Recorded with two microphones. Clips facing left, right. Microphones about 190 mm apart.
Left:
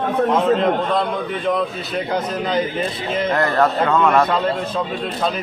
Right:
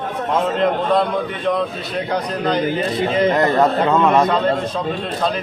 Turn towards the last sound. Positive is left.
turn(degrees=-20)  # may be behind; listen again after turning